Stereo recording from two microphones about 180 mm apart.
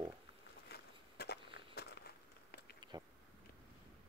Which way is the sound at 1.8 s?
60° left (ahead or behind).